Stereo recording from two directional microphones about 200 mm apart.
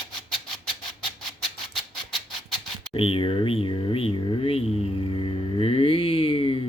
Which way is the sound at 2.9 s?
30° left (ahead or behind).